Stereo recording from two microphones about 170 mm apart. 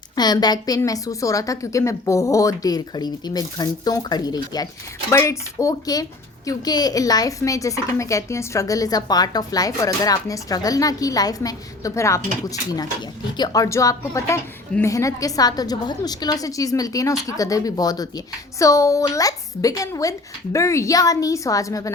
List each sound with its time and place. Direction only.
0.2 s a woman's voice: 25° left (ahead or behind)
13.3 s a woman's voice: 25° left (ahead or behind)